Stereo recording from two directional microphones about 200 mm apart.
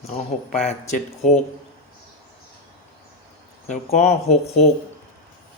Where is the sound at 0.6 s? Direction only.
40° left (ahead or behind).